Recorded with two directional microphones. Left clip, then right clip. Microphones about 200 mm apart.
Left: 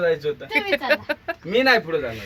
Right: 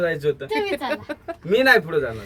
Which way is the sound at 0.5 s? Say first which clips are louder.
Left 3 dB; 5° right (ahead or behind).